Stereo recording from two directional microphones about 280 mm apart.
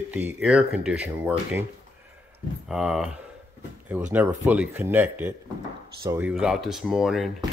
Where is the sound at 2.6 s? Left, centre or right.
Centre.